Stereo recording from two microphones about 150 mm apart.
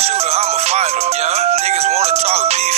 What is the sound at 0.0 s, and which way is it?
Music, 45° right (ahead or behind).